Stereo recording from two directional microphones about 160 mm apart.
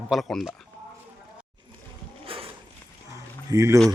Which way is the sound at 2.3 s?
35° right (ahead or behind).